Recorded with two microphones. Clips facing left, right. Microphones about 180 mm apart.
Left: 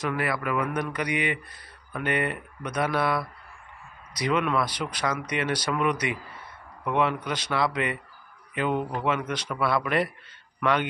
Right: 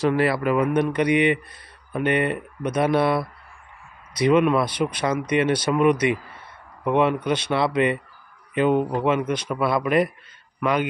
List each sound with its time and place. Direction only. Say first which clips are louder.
0.0 s a man's voice: right 8 dB; 30° right (ahead or behind); by 10.9 s 10° right (ahead or behind)